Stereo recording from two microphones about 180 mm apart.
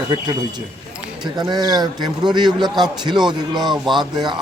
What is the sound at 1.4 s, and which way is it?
A man's voice, 25° right (ahead or behind).